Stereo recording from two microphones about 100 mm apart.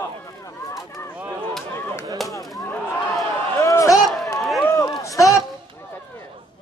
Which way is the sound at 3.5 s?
35° left (ahead or behind).